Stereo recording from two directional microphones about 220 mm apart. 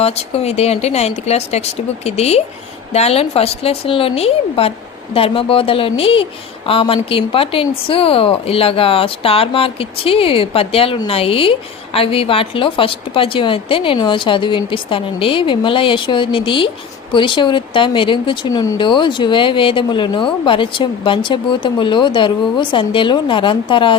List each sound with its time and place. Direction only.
0.0 s a woman's voice: 30° left (ahead or behind)